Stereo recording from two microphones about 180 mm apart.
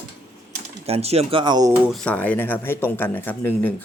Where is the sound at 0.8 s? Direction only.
35° right (ahead or behind).